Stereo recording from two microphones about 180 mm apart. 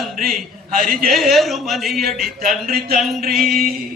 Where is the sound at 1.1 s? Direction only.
Centre (ahead or behind).